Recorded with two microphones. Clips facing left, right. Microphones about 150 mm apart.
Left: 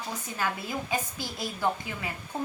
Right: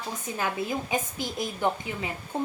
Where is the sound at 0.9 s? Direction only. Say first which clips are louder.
Right 3 dB; 20° right (ahead or behind).